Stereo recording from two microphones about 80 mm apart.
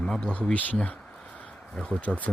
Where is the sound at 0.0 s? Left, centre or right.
Centre.